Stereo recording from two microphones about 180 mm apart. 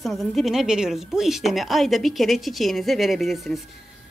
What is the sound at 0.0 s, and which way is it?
Speech, centre (ahead or behind).